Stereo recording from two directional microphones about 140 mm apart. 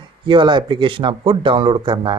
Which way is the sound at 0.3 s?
35° right (ahead or behind).